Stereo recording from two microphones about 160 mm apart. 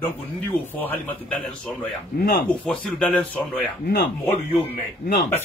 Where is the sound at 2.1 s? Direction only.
65° left (ahead or behind).